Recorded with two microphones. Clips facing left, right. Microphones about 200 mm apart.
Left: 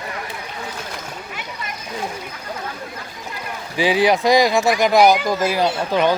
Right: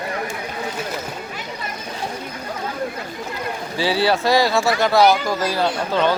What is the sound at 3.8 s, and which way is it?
Speech, 15° left (ahead or behind).